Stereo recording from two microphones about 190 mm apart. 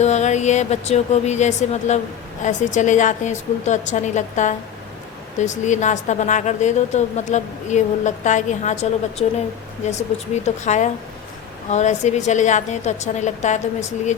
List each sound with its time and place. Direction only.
0.0 s a woman's voice: 35° left (ahead or behind)